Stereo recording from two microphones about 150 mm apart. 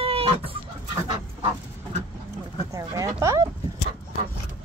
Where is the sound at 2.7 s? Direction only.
20° right (ahead or behind).